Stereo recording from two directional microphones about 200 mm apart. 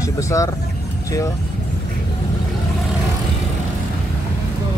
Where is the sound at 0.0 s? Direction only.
15° left (ahead or behind).